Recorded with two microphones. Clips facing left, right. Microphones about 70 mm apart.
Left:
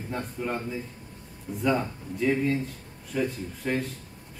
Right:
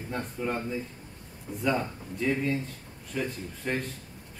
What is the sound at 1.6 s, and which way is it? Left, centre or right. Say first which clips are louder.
Speech: left 2 dB; centre.